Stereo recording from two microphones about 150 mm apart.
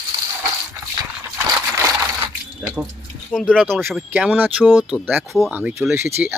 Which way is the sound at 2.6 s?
5° right (ahead or behind).